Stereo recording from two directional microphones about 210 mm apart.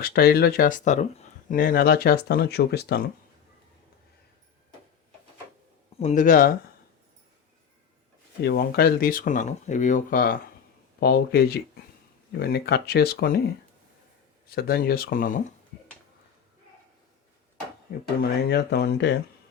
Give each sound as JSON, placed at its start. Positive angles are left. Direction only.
{"t": 0.0, "sound": "speech", "side_deg": 45}
{"t": 6.0, "sound": "speech", "side_deg": 35}
{"t": 8.4, "sound": "speech", "side_deg": 50}
{"t": 18.2, "sound": "speech", "side_deg": 50}